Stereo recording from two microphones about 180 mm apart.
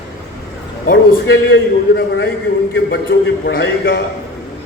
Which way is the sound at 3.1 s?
55° left (ahead or behind).